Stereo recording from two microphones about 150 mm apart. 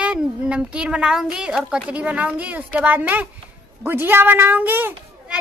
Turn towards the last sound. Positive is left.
turn(degrees=-10)  # may be behind; listen again after turning